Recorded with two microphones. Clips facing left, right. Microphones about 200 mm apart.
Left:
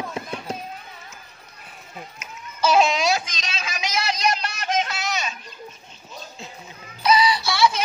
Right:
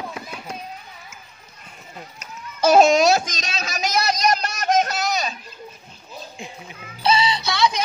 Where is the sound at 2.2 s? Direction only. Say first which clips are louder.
Right 4 dB; 45° right (ahead or behind).